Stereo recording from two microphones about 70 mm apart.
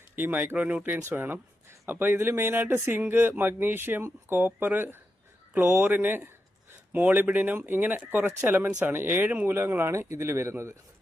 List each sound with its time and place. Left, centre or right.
0.2 s speech: right
9.6 s speech: right